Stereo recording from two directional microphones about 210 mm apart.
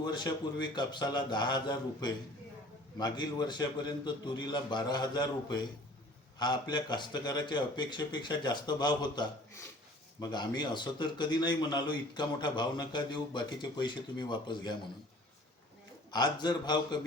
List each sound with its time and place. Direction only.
0.0 s a man's voice: 20° left (ahead or behind)
16.1 s a man's voice: 20° left (ahead or behind)